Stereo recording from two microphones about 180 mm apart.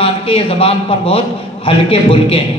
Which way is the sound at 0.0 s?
30° left (ahead or behind).